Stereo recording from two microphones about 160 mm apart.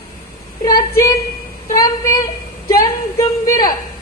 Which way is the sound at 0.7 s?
20° left (ahead or behind).